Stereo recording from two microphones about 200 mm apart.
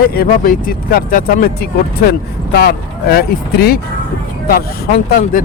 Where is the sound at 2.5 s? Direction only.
50° left (ahead or behind).